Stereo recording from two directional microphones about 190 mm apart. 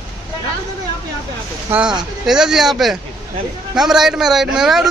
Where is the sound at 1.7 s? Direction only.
10° right (ahead or behind).